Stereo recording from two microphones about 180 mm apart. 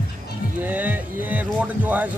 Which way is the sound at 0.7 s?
10° right (ahead or behind).